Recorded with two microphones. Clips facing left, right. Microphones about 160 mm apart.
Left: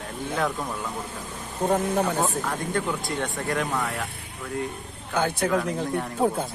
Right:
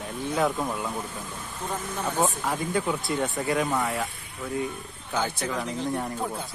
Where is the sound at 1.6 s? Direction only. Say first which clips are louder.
Left 10 dB; 60° left (ahead or behind).